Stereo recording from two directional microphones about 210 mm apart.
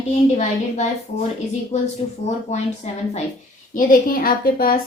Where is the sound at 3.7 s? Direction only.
40° left (ahead or behind).